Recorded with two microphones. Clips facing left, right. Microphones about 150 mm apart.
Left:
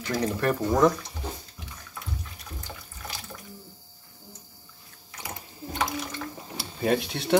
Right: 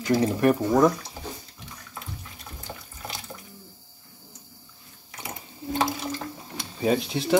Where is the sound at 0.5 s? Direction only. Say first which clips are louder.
Right 2 dB; 10° right (ahead or behind).